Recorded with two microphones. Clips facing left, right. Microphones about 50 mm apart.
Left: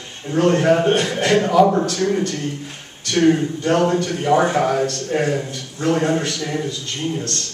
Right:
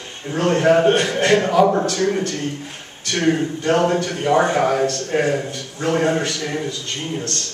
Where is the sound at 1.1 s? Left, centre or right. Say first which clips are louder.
Right 2 dB; centre.